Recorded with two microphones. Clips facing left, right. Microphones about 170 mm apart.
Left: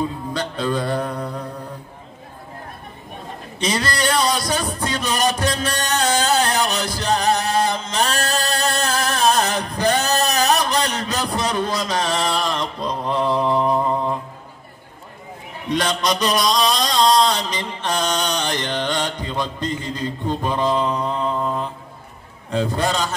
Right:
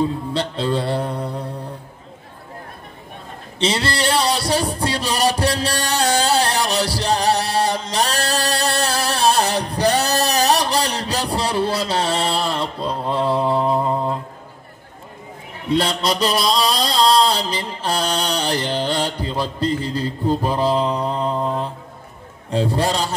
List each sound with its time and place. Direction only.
0.0 s music: 30° right (ahead or behind)
3.5 s a sound: 30° right (ahead or behind)
13.7 s mantra: 20° right (ahead or behind)
15.7 s a man's voice: 30° right (ahead or behind)
17.3 s mantra: 30° right (ahead or behind)
18.2 s music: 10° right (ahead or behind)
19.0 s music: 30° right (ahead or behind)
19.4 s mantra: 30° right (ahead or behind)